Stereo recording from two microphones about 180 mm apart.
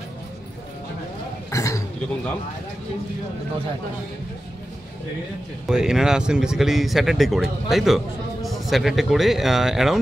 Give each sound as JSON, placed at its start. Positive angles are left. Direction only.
{"t": 1.5, "sound": "burping", "side_deg": 15}
{"t": 5.7, "sound": "speech", "side_deg": -5}